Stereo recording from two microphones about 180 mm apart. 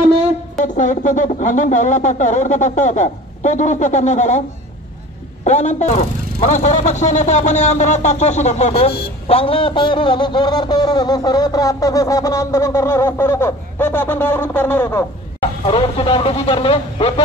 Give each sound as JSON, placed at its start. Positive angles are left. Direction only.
{"t": 0.6, "sound": "speech", "side_deg": 45}
{"t": 5.4, "sound": "a man's voice", "side_deg": 40}
{"t": 15.6, "sound": "speech", "side_deg": 30}